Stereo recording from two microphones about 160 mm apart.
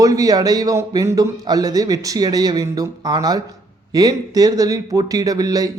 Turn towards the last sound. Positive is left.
turn(degrees=-25)  # may be behind; listen again after turning